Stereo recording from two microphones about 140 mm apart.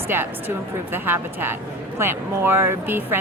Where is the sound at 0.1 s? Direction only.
15° right (ahead or behind).